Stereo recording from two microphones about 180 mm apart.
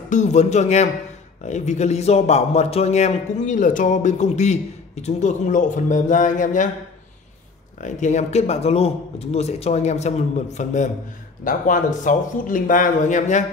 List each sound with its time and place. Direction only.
0.1 s a man's voice: 40° left (ahead or behind)
7.8 s a man's voice: 40° left (ahead or behind)